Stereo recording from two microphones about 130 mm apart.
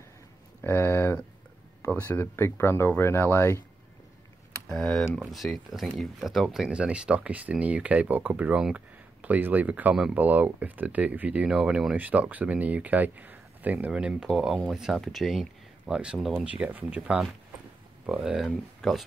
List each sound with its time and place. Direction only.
0.6 s speech: 15° left (ahead or behind)
4.6 s speech: 5° left (ahead or behind)